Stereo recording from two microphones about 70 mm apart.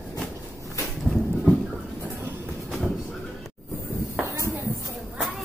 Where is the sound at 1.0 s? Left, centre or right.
Centre.